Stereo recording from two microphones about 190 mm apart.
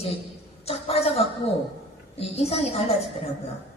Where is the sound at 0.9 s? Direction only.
30° left (ahead or behind).